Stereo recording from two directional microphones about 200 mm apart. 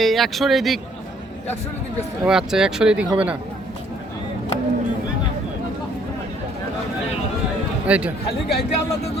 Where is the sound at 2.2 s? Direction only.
5° right (ahead or behind).